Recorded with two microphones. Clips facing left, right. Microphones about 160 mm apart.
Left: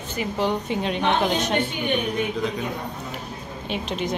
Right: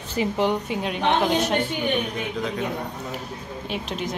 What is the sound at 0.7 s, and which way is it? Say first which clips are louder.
Speech: even; 5° right (ahead or behind).